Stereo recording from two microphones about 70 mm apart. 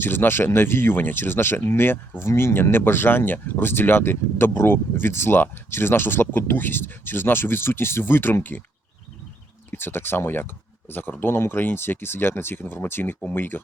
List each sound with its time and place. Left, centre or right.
0.0 s speech: left
9.7 s speech: left